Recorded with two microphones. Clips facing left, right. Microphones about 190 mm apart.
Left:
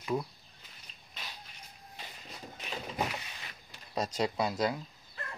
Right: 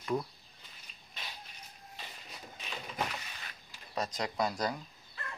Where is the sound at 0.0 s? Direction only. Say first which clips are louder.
Even; 5° left (ahead or behind).